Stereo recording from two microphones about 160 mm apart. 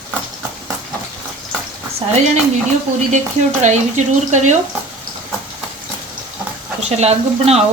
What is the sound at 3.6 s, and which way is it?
Speech, 50° right (ahead or behind).